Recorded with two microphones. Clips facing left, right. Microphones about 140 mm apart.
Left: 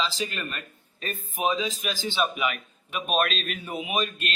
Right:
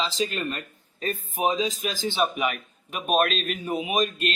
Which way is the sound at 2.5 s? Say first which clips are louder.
Right 1 dB; 40° right (ahead or behind).